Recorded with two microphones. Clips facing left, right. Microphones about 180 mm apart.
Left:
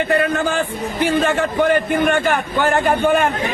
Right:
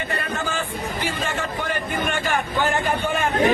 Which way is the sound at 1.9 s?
55° left (ahead or behind).